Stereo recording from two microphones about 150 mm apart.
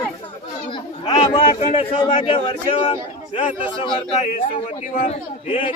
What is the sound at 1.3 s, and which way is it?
A man's voice, 35° left (ahead or behind).